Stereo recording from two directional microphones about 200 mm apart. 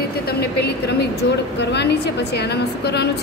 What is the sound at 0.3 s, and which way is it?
A woman's voice, 55° left (ahead or behind).